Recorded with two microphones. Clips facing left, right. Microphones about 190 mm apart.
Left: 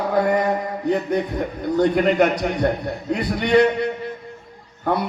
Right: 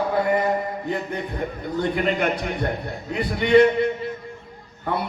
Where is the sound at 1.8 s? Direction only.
45° left (ahead or behind).